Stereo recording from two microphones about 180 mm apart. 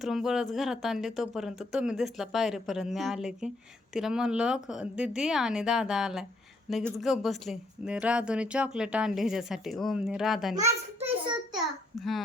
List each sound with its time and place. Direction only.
0.0 s speech: centre (ahead or behind)
10.5 s a child's voice: 40° right (ahead or behind)
11.5 s a sound: centre (ahead or behind)